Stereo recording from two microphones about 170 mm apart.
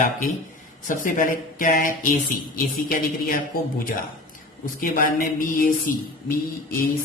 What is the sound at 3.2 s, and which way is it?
Speech, 55° left (ahead or behind).